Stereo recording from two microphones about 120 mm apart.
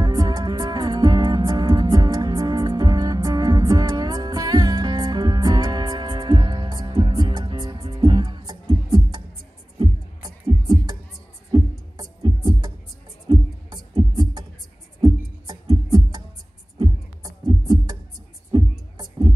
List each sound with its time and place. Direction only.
0.0 s music: 30° right (ahead or behind)
11.5 s beatboxing: 35° right (ahead or behind)
13.3 s music: 35° right (ahead or behind)
16.7 s a sound: 40° right (ahead or behind)
18.5 s music: 40° right (ahead or behind)